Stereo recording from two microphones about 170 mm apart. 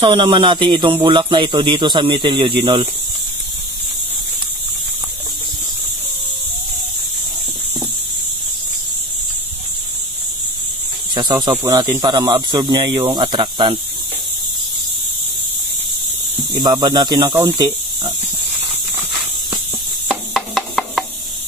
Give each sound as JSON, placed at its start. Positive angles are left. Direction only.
{"t": 0.0, "sound": "speech", "side_deg": -30}
{"t": 11.1, "sound": "speech", "side_deg": -25}
{"t": 16.6, "sound": "speech", "side_deg": -25}
{"t": 20.3, "sound": "a sound", "side_deg": 0}